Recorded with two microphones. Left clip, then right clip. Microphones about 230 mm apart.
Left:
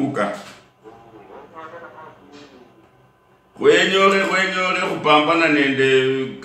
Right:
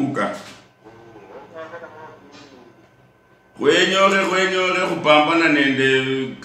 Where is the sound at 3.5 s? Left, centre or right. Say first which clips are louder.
Left 1 dB; centre.